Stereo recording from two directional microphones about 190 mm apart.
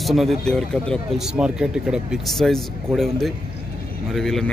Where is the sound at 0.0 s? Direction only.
Centre (ahead or behind).